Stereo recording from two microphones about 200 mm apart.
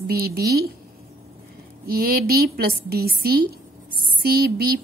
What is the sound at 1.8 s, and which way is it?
A woman's voice, 50° right (ahead or behind).